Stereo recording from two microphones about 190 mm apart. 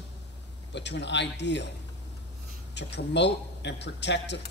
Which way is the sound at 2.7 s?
65° left (ahead or behind).